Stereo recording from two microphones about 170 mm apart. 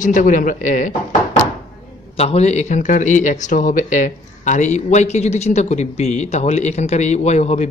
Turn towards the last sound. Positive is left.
turn(degrees=40)  # may be behind; listen again after turning